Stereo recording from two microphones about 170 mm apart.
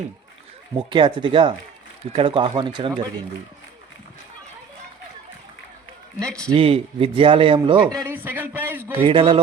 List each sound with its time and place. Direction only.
0.8 s speech: 30° right (ahead or behind)
6.1 s a man's voice: 5° left (ahead or behind)
6.6 s speech: 35° right (ahead or behind)
8.0 s a man's voice: 10° right (ahead or behind)
9.0 s speech: 30° right (ahead or behind)